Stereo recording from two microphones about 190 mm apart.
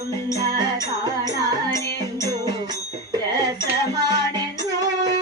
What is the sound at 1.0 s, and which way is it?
Music, 20° right (ahead or behind).